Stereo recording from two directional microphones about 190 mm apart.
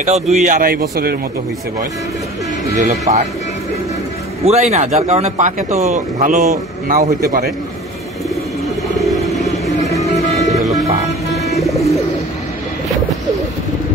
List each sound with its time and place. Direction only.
0.0 s speech: 40° right (ahead or behind)
2.8 s speech: 35° right (ahead or behind)
4.5 s speech: 35° right (ahead or behind); by 7.5 s 50° right (ahead or behind)
8.9 s bird: centre (ahead or behind)
10.7 s music: 20° right (ahead or behind)
11.6 s bird: centre (ahead or behind)